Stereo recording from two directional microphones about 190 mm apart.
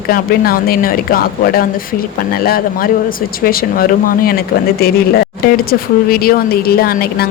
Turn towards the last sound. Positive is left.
turn(degrees=55)  # may be behind; listen again after turning